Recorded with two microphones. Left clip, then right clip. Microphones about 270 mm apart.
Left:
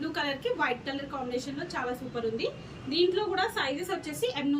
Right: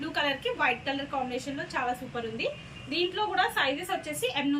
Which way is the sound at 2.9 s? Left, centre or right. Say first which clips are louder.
Left 2 dB; centre.